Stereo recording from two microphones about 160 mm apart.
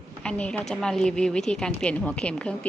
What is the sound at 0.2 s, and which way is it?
A woman's voice, 5° left (ahead or behind).